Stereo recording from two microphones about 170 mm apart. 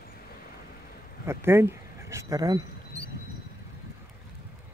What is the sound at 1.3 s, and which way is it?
Speech, 15° right (ahead or behind).